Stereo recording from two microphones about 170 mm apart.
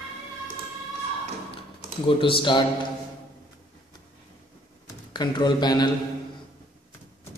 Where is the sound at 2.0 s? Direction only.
30° left (ahead or behind).